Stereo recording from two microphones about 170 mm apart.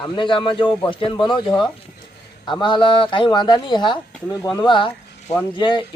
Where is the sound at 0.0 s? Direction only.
30° left (ahead or behind).